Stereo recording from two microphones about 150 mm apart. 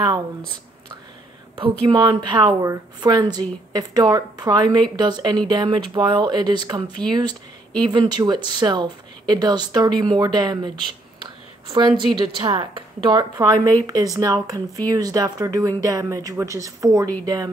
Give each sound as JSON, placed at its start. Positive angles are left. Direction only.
{"t": 1.6, "sound": "speech", "side_deg": -30}
{"t": 11.2, "sound": "a sound", "side_deg": -30}
{"t": 12.0, "sound": "a woman's voice", "side_deg": -30}